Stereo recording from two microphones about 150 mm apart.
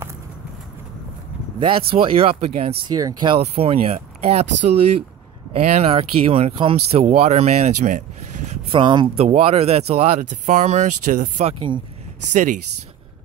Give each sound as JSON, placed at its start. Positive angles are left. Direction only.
{"t": 1.6, "sound": "speech", "side_deg": -35}
{"t": 3.0, "sound": "speech", "side_deg": -25}
{"t": 8.7, "sound": "speech", "side_deg": -30}